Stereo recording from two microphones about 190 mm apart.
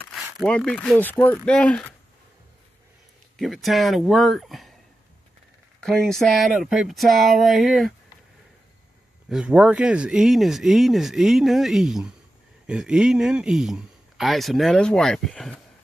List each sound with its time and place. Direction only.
0.0 s speech: centre (ahead or behind)
3.3 s speech: centre (ahead or behind)
5.8 s speech: centre (ahead or behind)
9.3 s speech: 5° right (ahead or behind)